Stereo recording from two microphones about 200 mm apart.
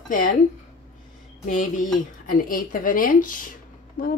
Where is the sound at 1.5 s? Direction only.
40° left (ahead or behind).